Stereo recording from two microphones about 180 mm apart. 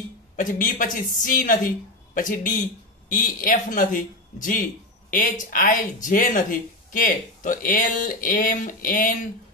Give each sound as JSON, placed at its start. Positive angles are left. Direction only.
{"t": 0.4, "sound": "speech", "side_deg": 50}